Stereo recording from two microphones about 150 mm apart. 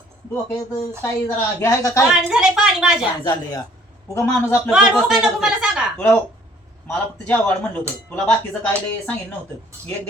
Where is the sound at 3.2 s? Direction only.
30° left (ahead or behind).